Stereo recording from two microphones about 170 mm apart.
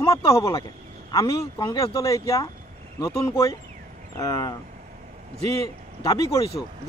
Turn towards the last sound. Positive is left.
turn(degrees=20)  # may be behind; listen again after turning